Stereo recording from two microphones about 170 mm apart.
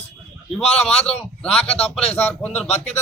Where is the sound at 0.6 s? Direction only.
40° left (ahead or behind).